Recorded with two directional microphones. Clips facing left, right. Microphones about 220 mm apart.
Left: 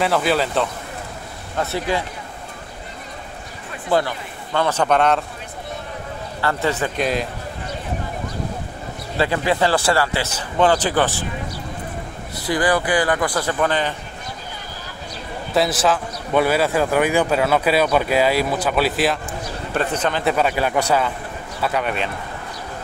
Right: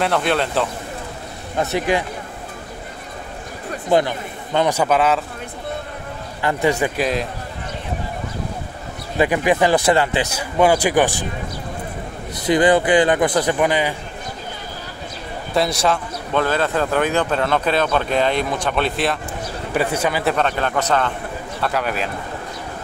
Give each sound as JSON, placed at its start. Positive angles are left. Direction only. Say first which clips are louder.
{"t": 0.0, "sound": "speech", "louder": "even", "side_deg": 0}
{"t": 1.6, "sound": "speech", "louder": "right 3 dB", "side_deg": -15}
{"t": 3.9, "sound": "speech", "louder": "right 3 dB", "side_deg": -20}
{"t": 6.4, "sound": "speech", "louder": "right 3 dB", "side_deg": -15}
{"t": 7.0, "sound": "speech", "louder": "right 1 dB", "side_deg": 0}
{"t": 9.2, "sound": "speech", "louder": "right 3 dB", "side_deg": -15}
{"t": 12.4, "sound": "speech", "louder": "right 5 dB", "side_deg": -20}
{"t": 15.5, "sound": "a man's voice", "louder": "even", "side_deg": 0}
{"t": 19.7, "sound": "speech", "louder": "right 2 dB", "side_deg": -10}
{"t": 20.3, "sound": "a man's voice", "louder": "left 1 dB", "side_deg": 10}